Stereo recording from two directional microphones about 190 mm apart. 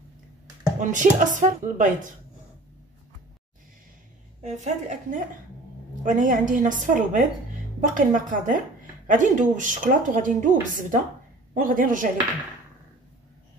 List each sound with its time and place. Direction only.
0.7 s speech: 40° right (ahead or behind)
4.4 s speech: 40° right (ahead or behind)